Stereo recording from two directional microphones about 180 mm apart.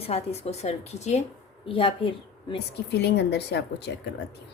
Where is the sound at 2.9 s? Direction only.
70° left (ahead or behind).